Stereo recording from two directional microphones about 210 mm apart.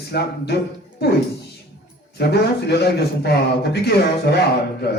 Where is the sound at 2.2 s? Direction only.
50° left (ahead or behind).